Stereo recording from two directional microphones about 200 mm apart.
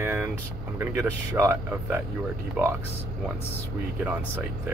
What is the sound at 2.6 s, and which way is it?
Speech, centre (ahead or behind).